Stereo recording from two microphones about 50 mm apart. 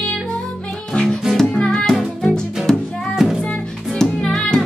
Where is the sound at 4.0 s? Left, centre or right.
Centre.